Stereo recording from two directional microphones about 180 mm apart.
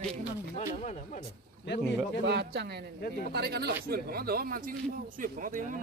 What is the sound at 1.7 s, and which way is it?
Speech, 75° left (ahead or behind).